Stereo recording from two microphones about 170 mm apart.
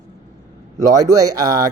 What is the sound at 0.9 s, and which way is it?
Speech, 20° right (ahead or behind).